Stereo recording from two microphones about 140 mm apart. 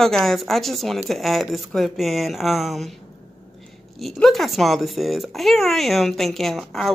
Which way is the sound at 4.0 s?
Centre (ahead or behind).